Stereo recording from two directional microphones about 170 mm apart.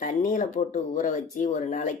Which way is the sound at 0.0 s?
50° left (ahead or behind).